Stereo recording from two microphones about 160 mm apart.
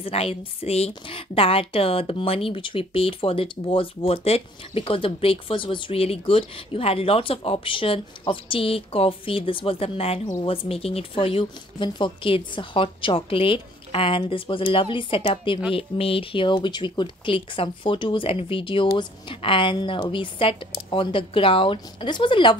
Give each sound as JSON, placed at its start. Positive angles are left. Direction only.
{"t": 0.0, "sound": "a woman's voice", "side_deg": 35}